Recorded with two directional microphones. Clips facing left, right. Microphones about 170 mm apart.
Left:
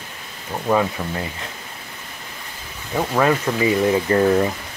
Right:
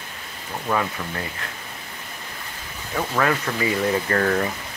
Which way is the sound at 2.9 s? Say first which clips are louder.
Left 4 dB; 20° left (ahead or behind).